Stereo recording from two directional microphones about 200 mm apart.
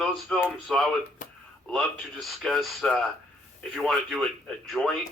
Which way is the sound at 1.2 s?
40° left (ahead or behind).